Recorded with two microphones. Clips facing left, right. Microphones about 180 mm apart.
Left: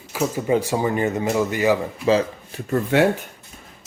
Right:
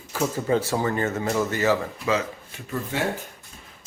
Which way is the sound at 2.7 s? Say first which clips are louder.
Left 10 dB; 70° left (ahead or behind).